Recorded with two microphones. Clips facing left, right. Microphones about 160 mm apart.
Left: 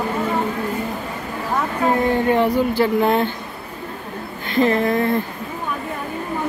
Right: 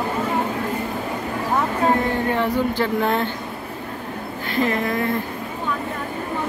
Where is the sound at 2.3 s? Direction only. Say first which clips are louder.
Left 4 dB; 15° left (ahead or behind).